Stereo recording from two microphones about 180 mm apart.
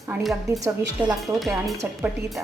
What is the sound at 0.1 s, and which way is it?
Speech, centre (ahead or behind).